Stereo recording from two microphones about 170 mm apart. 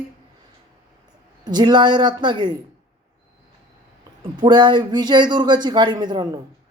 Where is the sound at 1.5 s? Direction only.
25° right (ahead or behind).